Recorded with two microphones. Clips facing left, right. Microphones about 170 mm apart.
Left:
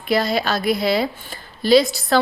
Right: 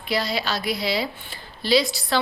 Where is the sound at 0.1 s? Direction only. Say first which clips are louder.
Left 6 dB; 50° left (ahead or behind).